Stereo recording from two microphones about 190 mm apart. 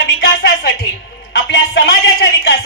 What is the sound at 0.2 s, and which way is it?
Music, 65° left (ahead or behind).